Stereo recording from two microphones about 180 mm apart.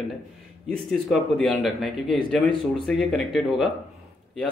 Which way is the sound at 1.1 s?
Centre (ahead or behind).